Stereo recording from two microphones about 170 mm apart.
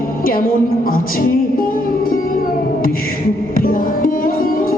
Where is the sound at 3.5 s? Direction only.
55° left (ahead or behind).